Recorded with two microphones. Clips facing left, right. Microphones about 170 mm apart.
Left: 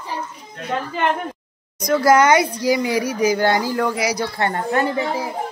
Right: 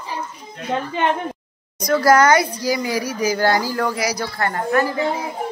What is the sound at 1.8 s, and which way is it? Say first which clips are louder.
A child's voice: even; 20° left (ahead or behind).